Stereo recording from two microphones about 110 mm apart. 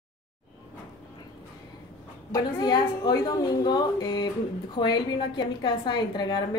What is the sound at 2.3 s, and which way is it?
A woman's voice, 40° left (ahead or behind).